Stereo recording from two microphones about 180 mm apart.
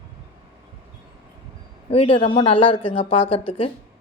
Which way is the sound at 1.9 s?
30° left (ahead or behind).